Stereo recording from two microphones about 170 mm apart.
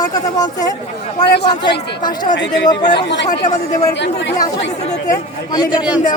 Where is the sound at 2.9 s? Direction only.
90° left.